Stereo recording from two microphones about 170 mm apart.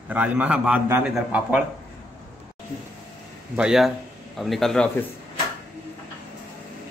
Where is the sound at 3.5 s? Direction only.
5° right (ahead or behind).